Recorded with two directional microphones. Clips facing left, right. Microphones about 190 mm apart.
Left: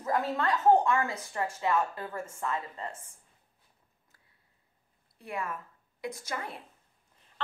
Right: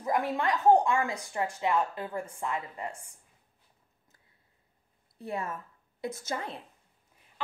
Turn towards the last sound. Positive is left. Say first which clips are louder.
# right 2 dB
turn(degrees=-25)  # may be behind; listen again after turning